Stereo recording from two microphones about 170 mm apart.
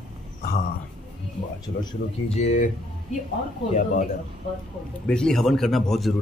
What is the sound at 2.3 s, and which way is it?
Speech, 40° left (ahead or behind).